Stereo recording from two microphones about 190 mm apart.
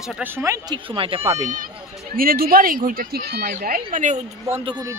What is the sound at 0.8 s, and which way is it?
Speech, 30° right (ahead or behind).